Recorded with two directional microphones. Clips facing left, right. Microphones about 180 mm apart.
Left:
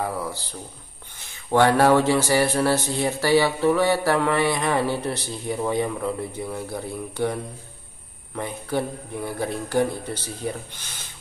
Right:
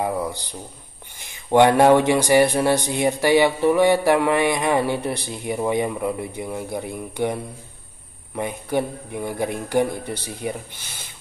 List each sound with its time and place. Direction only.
0.0 s speech: 20° right (ahead or behind)
1.5 s speech: 20° right (ahead or behind)
8.4 s speech: 15° right (ahead or behind)